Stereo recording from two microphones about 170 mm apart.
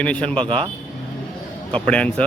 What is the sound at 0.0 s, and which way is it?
Speech, 5° left (ahead or behind).